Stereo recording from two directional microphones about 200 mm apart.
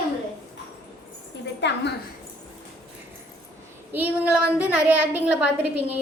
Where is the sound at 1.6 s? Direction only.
60° left (ahead or behind).